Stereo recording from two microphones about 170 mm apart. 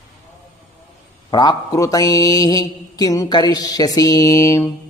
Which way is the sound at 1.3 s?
25° left (ahead or behind).